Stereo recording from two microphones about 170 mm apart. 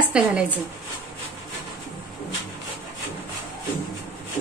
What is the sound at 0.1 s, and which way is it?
Speech, 5° right (ahead or behind).